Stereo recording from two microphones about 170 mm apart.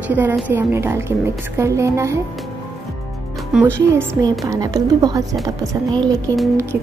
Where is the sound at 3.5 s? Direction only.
5° right (ahead or behind).